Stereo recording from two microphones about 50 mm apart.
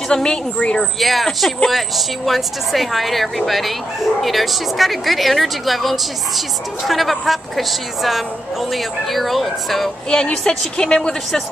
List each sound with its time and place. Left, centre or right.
0.1 s a woman's voice: centre
0.9 s a woman's voice: centre
10.0 s a woman's voice: centre